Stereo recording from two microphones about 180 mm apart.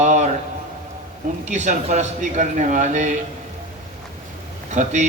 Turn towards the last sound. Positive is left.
turn(degrees=-40)  # may be behind; listen again after turning